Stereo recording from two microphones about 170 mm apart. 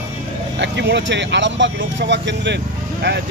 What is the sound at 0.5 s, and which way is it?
Speech, 90° right.